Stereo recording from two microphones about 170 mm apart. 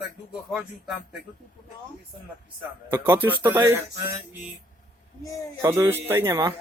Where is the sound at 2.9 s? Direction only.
10° right (ahead or behind).